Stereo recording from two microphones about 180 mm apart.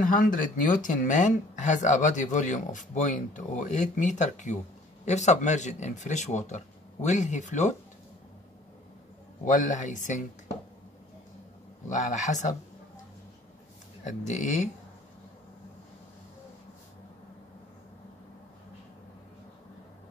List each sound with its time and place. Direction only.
0.0 s speech: 45° left (ahead or behind)
9.4 s speech: 45° left (ahead or behind)
11.9 s speech: 40° left (ahead or behind)
14.0 s speech: 40° left (ahead or behind)